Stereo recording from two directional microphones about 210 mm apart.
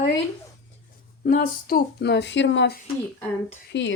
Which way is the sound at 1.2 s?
40° left (ahead or behind).